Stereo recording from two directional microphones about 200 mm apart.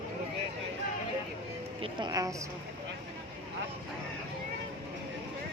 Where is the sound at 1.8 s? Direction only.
20° right (ahead or behind).